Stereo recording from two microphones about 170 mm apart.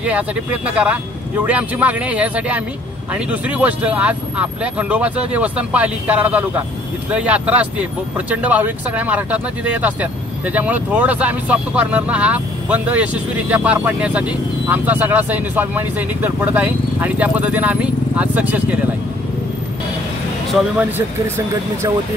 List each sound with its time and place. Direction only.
0.0 s speech: 10° right (ahead or behind)